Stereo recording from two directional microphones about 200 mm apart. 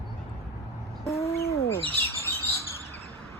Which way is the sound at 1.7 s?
15° left (ahead or behind).